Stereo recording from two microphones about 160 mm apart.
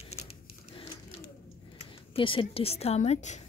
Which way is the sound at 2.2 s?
35° left (ahead or behind).